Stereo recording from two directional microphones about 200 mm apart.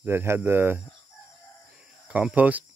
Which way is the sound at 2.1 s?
5° right (ahead or behind).